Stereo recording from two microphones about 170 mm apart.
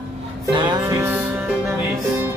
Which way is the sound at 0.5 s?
25° right (ahead or behind).